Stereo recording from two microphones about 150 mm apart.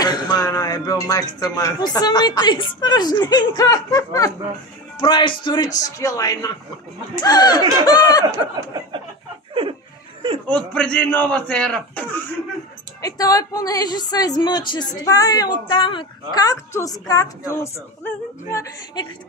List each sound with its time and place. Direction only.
0.0 s a woman's voice: 25° left (ahead or behind)
9.5 s chuckle: 35° right (ahead or behind)
10.5 s a man's voice: 5° left (ahead or behind)
13.0 s a woman's voice: 25° left (ahead or behind)